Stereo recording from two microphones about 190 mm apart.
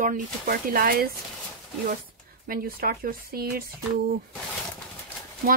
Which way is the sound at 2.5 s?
50° right (ahead or behind).